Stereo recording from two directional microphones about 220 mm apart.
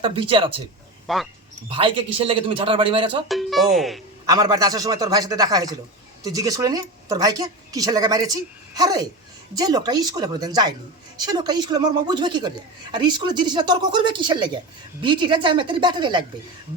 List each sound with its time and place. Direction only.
0.0 s a woman's voice: 25° right (ahead or behind)
1.0 s speech: centre (ahead or behind)
1.7 s a woman's voice: 25° right (ahead or behind)
3.2 s speech: centre (ahead or behind)
4.3 s a woman's voice: 15° right (ahead or behind)